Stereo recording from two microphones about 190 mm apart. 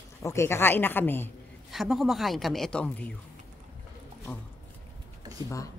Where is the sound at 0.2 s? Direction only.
15° left (ahead or behind).